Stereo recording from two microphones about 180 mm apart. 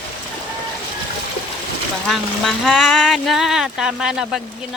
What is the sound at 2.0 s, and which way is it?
Speech, centre (ahead or behind).